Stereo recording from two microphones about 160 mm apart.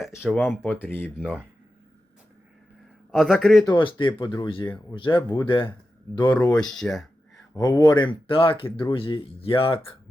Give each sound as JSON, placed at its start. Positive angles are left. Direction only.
{"t": 0.2, "sound": "a man's voice", "side_deg": 0}
{"t": 0.4, "sound": "speech", "side_deg": 10}
{"t": 1.2, "sound": "speech", "side_deg": -10}
{"t": 3.1, "sound": "a man's voice", "side_deg": 0}
{"t": 3.6, "sound": "speech", "side_deg": 25}
{"t": 6.5, "sound": "speech", "side_deg": 5}
{"t": 7.5, "sound": "speech", "side_deg": 25}